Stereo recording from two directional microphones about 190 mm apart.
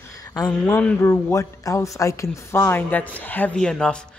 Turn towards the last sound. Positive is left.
turn(degrees=5)  # may be behind; listen again after turning